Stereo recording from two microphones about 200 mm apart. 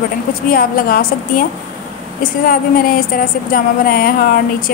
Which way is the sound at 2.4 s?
45° left (ahead or behind).